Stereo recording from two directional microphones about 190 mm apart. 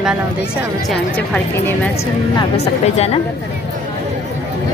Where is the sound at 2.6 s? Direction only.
35° left (ahead or behind).